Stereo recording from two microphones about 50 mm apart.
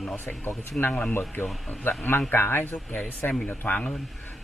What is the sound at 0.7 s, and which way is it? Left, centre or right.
Speech, left.